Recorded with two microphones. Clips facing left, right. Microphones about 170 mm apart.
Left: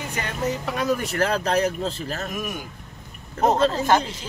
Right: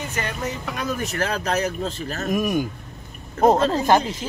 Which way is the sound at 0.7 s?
30° left (ahead or behind).